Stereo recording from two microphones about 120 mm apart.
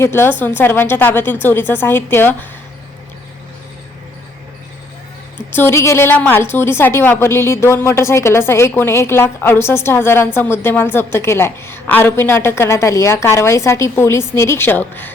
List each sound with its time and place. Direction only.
0.0 s speech: 20° left (ahead or behind)
5.5 s a woman's voice: 20° left (ahead or behind)